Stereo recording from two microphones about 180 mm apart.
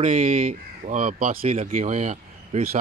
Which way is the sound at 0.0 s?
40° right (ahead or behind).